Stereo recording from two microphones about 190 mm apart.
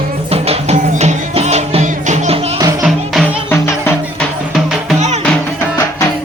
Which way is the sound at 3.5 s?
10° left (ahead or behind).